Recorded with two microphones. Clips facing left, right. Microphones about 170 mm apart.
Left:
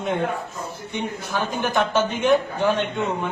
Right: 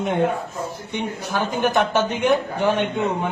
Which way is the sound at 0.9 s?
15° right (ahead or behind).